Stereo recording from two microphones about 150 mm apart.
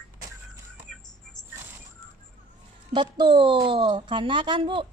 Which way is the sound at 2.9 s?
30° right (ahead or behind).